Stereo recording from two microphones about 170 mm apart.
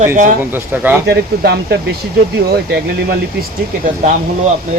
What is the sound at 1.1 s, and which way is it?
Speech, 75° right (ahead or behind).